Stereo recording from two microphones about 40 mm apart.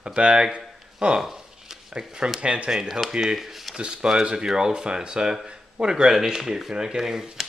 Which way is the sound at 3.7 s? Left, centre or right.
Centre.